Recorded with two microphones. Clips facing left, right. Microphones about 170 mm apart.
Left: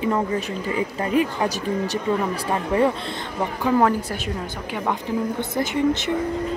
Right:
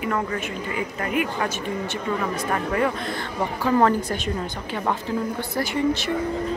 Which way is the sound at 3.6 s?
10° left (ahead or behind).